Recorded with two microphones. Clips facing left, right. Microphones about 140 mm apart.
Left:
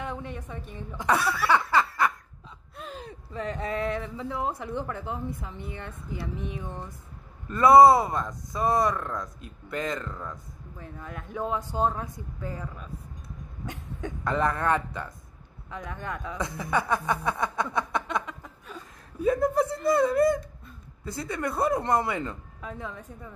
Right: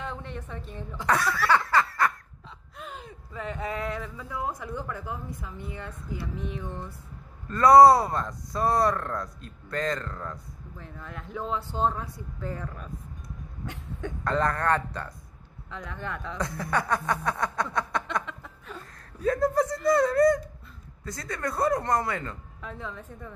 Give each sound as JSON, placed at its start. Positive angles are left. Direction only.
{"t": 0.0, "sound": "a woman's voice", "side_deg": 15}
{"t": 1.4, "sound": "snicker", "side_deg": 25}
{"t": 2.8, "sound": "speech", "side_deg": 35}
{"t": 5.4, "sound": "a sound", "side_deg": 20}
{"t": 7.9, "sound": "speech", "side_deg": 0}
{"t": 10.8, "sound": "speech", "side_deg": 15}
{"t": 13.7, "sound": "cough", "side_deg": 15}
{"t": 14.7, "sound": "speech", "side_deg": 10}
{"t": 16.4, "sound": "a sound", "side_deg": 20}
{"t": 19.2, "sound": "speech", "side_deg": 10}
{"t": 21.3, "sound": "speech", "side_deg": 10}
{"t": 21.8, "sound": "a sound", "side_deg": 25}
{"t": 22.1, "sound": "speech", "side_deg": 15}